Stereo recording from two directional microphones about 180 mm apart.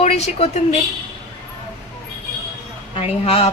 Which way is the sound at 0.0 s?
35° left (ahead or behind).